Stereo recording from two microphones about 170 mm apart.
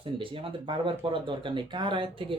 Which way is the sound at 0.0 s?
30° right (ahead or behind).